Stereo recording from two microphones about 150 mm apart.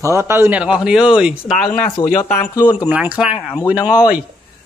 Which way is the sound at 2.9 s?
10° right (ahead or behind).